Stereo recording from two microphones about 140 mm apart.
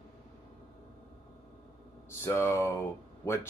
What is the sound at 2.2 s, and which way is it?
Speech, 20° left (ahead or behind).